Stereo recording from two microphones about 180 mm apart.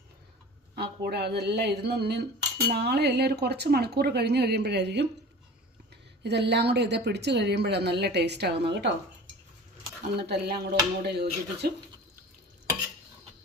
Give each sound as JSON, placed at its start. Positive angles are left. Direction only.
{"t": 0.8, "sound": "speech", "side_deg": -65}
{"t": 6.2, "sound": "speech", "side_deg": -70}
{"t": 10.2, "sound": "speech", "side_deg": -65}